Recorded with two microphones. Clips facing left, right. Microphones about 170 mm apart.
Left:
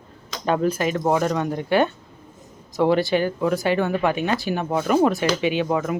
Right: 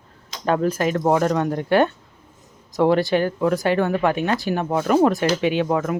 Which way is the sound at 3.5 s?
40° right (ahead or behind).